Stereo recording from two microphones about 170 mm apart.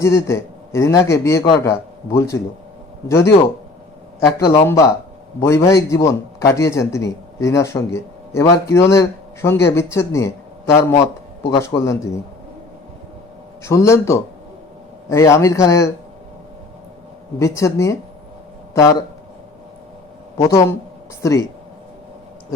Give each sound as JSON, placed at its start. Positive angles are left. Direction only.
{"t": 0.0, "sound": "a man's voice", "side_deg": 15}
{"t": 4.5, "sound": "a man's voice", "side_deg": 15}
{"t": 13.7, "sound": "a man's voice", "side_deg": 15}
{"t": 17.4, "sound": "a man's voice", "side_deg": 15}
{"t": 20.4, "sound": "a man's voice", "side_deg": 15}